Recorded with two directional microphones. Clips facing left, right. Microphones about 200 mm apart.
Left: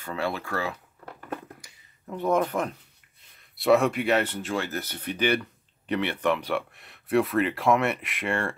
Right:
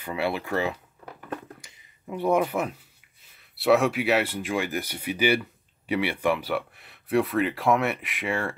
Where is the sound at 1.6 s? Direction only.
25° right (ahead or behind).